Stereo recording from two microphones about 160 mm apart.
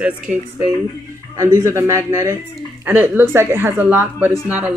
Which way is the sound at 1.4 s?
20° right (ahead or behind).